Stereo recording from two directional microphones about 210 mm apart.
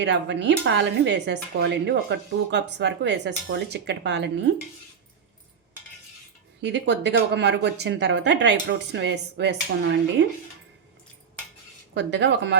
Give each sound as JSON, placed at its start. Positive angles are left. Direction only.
{"t": 0.0, "sound": "speech", "side_deg": -55}
{"t": 6.6, "sound": "speech", "side_deg": -55}
{"t": 11.9, "sound": "speech", "side_deg": -55}